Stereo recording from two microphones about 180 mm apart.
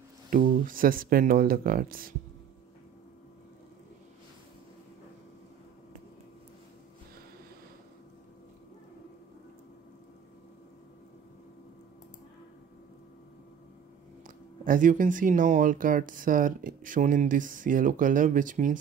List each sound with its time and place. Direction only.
0.3 s speech: 50° right (ahead or behind)
14.2 s speech: 50° right (ahead or behind)